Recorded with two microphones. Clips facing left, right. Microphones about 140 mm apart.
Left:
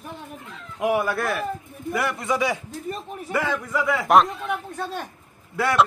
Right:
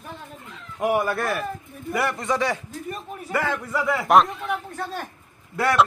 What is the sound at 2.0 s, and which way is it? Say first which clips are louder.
Speech: even; 5° left (ahead or behind).